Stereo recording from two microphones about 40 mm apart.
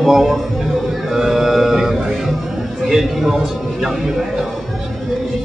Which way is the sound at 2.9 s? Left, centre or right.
Centre.